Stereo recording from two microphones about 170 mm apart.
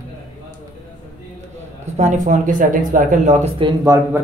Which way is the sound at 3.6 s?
30° right (ahead or behind).